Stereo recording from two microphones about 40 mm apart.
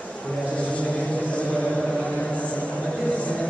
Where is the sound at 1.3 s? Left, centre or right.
Left.